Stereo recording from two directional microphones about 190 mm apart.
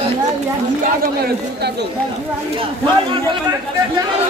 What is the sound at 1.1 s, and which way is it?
Speech, 55° right (ahead or behind).